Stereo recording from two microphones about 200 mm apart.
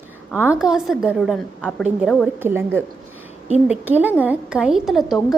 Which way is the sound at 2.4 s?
10° right (ahead or behind).